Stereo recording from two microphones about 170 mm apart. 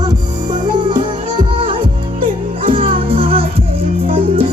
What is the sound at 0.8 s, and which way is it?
Music, 25° right (ahead or behind).